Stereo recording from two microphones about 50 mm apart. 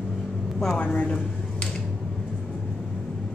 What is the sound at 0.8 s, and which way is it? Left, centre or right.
Speech, left.